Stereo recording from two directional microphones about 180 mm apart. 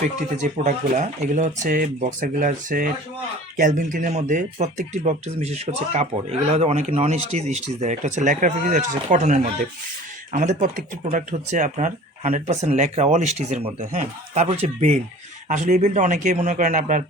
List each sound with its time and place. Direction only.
0.6 s speech: 40° right (ahead or behind)